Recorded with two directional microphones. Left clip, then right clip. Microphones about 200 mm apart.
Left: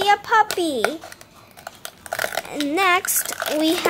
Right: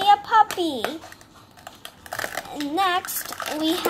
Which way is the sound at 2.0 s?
5° left (ahead or behind).